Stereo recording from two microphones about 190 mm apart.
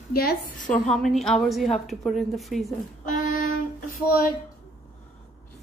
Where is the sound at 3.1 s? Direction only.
45° left (ahead or behind).